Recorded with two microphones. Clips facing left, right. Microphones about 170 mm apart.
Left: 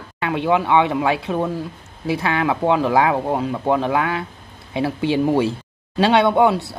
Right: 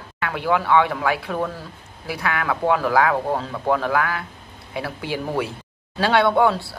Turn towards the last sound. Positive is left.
turn(degrees=20)  # may be behind; listen again after turning